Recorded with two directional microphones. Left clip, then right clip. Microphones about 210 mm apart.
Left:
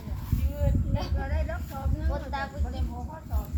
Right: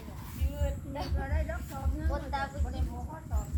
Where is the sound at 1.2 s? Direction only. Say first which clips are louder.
Left 3 dB; 35° left (ahead or behind).